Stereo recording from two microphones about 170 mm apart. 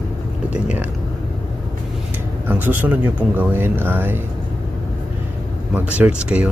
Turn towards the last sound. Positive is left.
turn(degrees=-5)  # may be behind; listen again after turning